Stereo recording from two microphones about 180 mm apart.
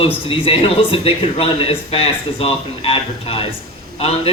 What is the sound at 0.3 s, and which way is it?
A man's voice, 30° left (ahead or behind).